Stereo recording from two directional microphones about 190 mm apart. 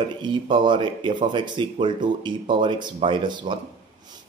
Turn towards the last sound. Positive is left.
turn(degrees=-25)  # may be behind; listen again after turning